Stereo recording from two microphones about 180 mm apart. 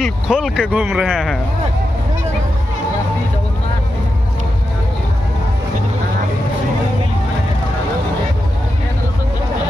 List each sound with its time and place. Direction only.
0.0 s speech: 5° right (ahead or behind)